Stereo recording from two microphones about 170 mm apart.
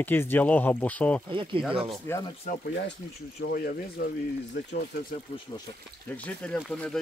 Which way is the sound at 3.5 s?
65° left (ahead or behind).